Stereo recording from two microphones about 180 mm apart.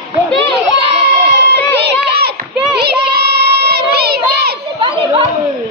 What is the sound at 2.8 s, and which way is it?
Child singing, 65° right (ahead or behind).